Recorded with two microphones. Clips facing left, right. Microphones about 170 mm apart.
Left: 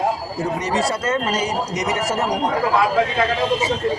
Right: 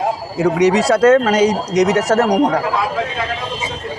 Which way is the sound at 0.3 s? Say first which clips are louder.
Right 8 dB; 80° right.